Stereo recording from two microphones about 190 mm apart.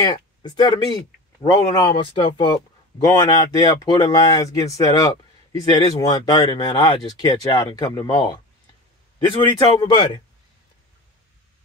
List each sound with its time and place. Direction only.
0.0 s speech: 20° left (ahead or behind)